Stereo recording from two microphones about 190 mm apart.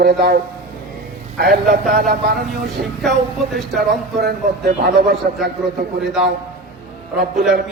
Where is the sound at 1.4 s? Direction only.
50° right (ahead or behind).